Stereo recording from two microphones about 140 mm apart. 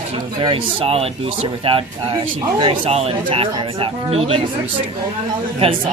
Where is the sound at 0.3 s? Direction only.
40° right (ahead or behind).